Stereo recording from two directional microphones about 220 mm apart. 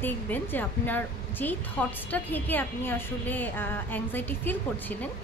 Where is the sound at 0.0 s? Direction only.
10° left (ahead or behind).